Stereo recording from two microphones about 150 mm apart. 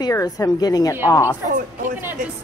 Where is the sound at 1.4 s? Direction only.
60° right (ahead or behind).